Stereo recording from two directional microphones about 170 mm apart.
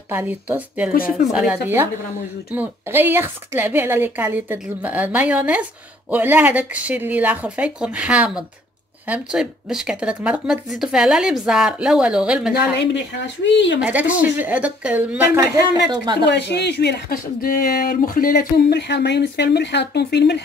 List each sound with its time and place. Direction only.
0.1 s a woman's voice: 10° right (ahead or behind)
0.9 s speech: 60° left (ahead or behind)
1.3 s a woman's voice: 5° right (ahead or behind)
12.5 s speech: 90° left
13.7 s a woman's voice: 10° right (ahead or behind); by 16.3 s 25° right (ahead or behind)
16.3 s speech: 85° left